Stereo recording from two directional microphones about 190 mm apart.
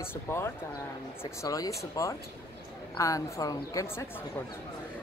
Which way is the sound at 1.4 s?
15° left (ahead or behind).